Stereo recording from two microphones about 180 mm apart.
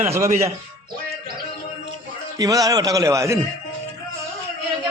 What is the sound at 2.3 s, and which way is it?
A man's voice, 20° right (ahead or behind).